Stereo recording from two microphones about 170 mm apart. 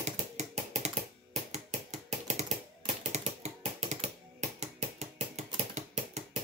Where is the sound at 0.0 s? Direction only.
40° right (ahead or behind).